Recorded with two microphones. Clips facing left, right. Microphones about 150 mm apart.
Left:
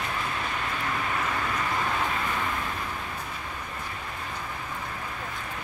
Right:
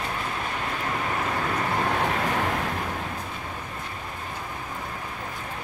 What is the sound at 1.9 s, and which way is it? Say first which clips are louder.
Vehicle: right 4 dB; 60° right (ahead or behind).